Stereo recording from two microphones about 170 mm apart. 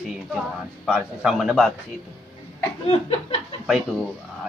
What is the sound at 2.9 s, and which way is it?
Chuckle, 35° left (ahead or behind).